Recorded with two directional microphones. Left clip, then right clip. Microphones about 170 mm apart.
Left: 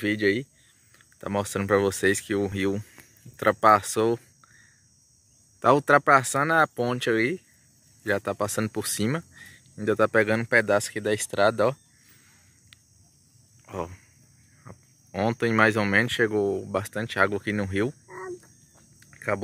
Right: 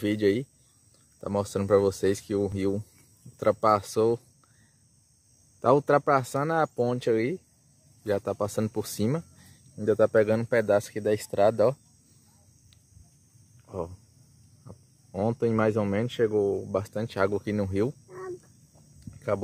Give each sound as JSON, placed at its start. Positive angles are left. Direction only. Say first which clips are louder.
{"t": 0.0, "sound": "speech", "louder": "left 1 dB", "side_deg": -15}
{"t": 1.2, "sound": "speech", "louder": "left 1 dB", "side_deg": 0}
{"t": 5.6, "sound": "speech", "louder": "left 3 dB", "side_deg": 0}
{"t": 14.6, "sound": "a sound", "louder": "left 3 dB", "side_deg": 15}
{"t": 15.1, "sound": "speech", "louder": "left 3 dB", "side_deg": -5}
{"t": 16.7, "sound": "speech", "louder": "left 3 dB", "side_deg": 0}
{"t": 18.0, "sound": "cricket", "louder": "left 2 dB", "side_deg": 25}
{"t": 18.9, "sound": "cricket", "louder": "left 1 dB", "side_deg": 0}